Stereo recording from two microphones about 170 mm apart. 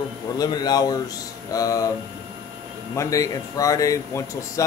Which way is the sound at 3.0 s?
20° left (ahead or behind).